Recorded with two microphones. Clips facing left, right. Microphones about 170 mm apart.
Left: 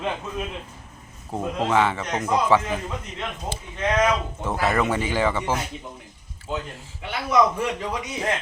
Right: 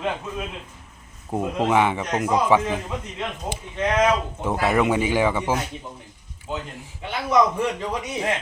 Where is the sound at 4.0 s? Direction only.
15° right (ahead or behind).